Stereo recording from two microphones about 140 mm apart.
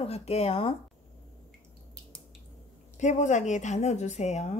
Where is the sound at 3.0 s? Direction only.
60° left (ahead or behind).